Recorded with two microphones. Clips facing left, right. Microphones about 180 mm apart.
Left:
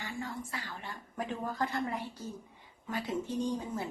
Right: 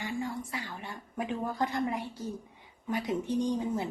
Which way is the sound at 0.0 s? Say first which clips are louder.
Right 5 dB; 15° right (ahead or behind).